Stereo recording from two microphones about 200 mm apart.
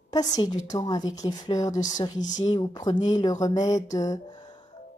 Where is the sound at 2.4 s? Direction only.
20° left (ahead or behind).